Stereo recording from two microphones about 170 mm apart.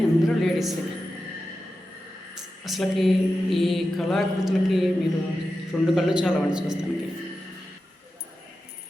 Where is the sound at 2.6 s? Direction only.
Centre (ahead or behind).